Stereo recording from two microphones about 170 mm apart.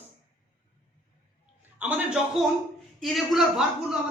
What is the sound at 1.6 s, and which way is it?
A man's voice, 10° right (ahead or behind).